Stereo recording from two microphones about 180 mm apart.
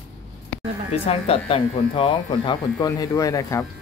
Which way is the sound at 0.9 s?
35° left (ahead or behind).